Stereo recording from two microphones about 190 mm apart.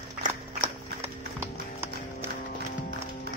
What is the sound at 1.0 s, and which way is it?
Clip-clop, 15° right (ahead or behind).